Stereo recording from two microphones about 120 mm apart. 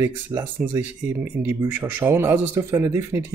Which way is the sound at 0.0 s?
20° right (ahead or behind).